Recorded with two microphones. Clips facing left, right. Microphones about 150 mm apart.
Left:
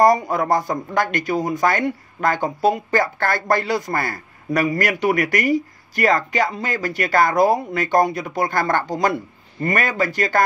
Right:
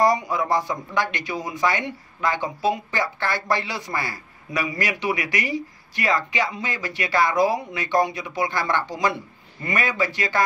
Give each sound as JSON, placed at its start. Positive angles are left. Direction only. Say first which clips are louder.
{"t": 0.0, "sound": "speech", "louder": "left 4 dB", "side_deg": 50}